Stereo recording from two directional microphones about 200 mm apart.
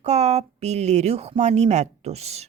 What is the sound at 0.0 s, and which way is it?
A woman's voice, 35° right (ahead or behind).